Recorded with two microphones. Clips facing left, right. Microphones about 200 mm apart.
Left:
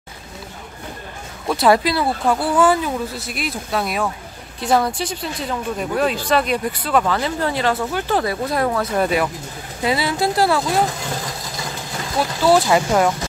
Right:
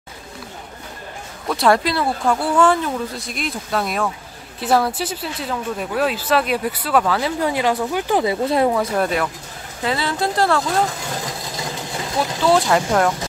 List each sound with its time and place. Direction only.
1.5 s speech: 5° left (ahead or behind); by 8.7 s 25° right (ahead or behind)
8.9 s speech: 5° left (ahead or behind)
12.4 s speech: 5° left (ahead or behind)